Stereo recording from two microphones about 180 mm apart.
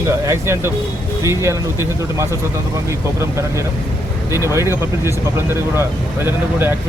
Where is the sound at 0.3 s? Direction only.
15° right (ahead or behind).